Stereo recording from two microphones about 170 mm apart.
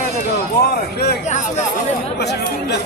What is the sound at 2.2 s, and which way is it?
Speech, 75° left (ahead or behind).